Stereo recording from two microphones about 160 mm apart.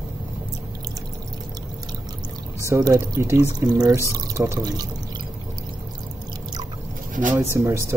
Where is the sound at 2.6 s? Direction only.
20° right (ahead or behind).